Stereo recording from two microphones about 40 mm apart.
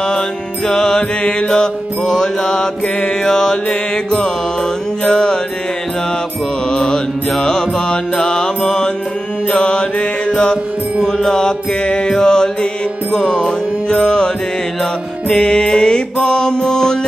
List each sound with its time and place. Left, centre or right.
0.7 s mantra: centre
5.0 s music: centre
6.7 s mantra: centre
9.5 s music: left
11.1 s mantra: centre
13.3 s music: centre